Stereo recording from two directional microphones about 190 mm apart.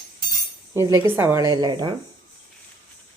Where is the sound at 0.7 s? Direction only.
15° right (ahead or behind).